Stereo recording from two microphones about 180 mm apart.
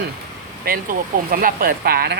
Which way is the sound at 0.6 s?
55° right (ahead or behind).